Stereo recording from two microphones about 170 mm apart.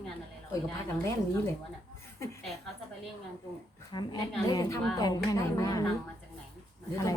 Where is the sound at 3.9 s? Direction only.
25° left (ahead or behind).